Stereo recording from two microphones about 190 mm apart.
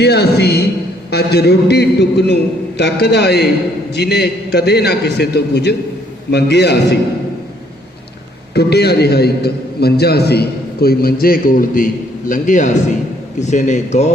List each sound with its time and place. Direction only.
0.0 s a man's voice: 60° left (ahead or behind)
8.5 s a man's voice: 60° left (ahead or behind); by 14.1 s 40° left (ahead or behind)